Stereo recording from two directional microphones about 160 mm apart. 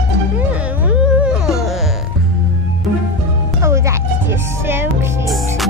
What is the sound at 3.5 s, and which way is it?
Music, 20° right (ahead or behind).